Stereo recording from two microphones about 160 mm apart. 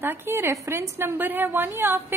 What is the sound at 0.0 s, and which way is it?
A woman's voice, 15° right (ahead or behind).